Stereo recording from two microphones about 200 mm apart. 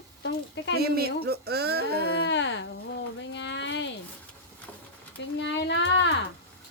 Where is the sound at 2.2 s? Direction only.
65° left (ahead or behind).